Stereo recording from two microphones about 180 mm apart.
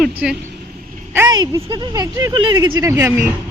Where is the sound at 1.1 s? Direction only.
15° right (ahead or behind).